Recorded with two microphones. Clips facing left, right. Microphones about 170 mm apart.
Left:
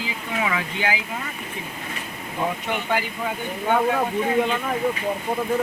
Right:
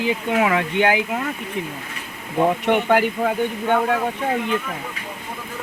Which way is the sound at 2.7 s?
60° right (ahead or behind).